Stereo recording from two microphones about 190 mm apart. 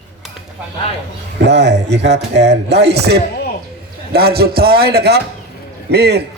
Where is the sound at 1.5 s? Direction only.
65° right (ahead or behind).